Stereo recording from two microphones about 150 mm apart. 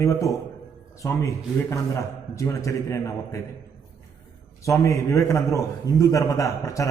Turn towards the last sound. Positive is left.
turn(degrees=20)  # may be behind; listen again after turning